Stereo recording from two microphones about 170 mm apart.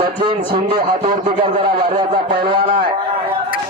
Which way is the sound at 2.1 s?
65° right (ahead or behind).